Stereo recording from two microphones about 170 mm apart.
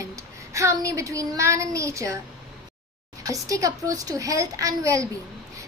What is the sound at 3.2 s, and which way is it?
A child's voice, 20° right (ahead or behind).